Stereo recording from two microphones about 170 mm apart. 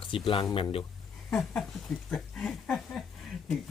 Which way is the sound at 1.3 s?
Centre (ahead or behind).